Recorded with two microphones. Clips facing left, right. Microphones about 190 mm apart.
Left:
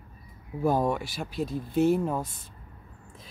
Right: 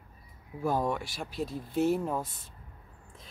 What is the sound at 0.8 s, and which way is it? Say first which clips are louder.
Speech: left 4 dB; 5° left (ahead or behind).